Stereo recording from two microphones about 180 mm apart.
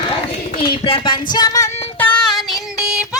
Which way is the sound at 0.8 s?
25° left (ahead or behind).